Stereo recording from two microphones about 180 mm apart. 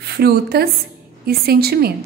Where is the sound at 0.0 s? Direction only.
60° right (ahead or behind).